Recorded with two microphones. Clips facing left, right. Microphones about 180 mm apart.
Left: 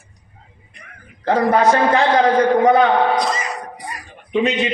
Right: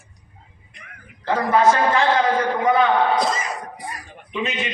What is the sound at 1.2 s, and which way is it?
A man's voice, 40° left (ahead or behind).